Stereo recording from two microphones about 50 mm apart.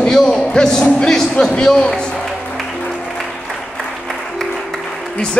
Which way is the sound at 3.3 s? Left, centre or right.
Centre.